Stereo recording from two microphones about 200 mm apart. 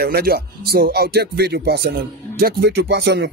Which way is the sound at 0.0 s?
50° right (ahead or behind).